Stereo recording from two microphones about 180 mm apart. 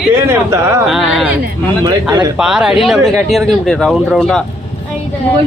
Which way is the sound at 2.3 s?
5° right (ahead or behind).